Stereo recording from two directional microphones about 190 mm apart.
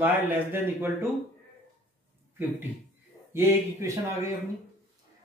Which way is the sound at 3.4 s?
15° right (ahead or behind).